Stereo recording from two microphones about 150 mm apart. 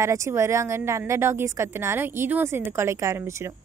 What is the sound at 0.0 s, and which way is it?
A woman's voice, 20° right (ahead or behind).